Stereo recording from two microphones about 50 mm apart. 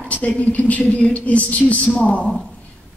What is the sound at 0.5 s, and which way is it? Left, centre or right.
A woman's voice, left.